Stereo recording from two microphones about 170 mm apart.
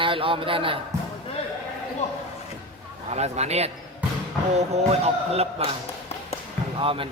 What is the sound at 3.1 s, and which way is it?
Speech, 40° right (ahead or behind).